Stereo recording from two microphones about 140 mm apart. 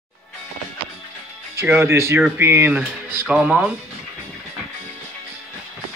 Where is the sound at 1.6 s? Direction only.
20° right (ahead or behind).